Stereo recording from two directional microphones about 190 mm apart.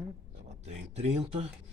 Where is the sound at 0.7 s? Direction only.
35° right (ahead or behind).